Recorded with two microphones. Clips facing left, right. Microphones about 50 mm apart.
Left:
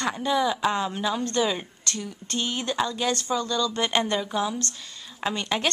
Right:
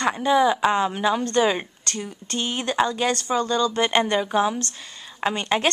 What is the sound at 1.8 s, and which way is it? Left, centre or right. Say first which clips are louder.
Speech: right 2 dB; centre.